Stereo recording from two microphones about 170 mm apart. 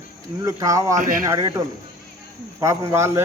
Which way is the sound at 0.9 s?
55° right (ahead or behind).